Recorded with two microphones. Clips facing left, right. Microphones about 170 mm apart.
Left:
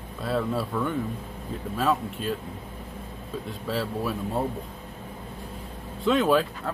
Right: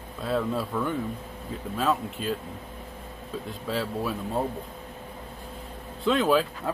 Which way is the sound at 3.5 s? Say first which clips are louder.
Left 1 dB; centre (ahead or behind).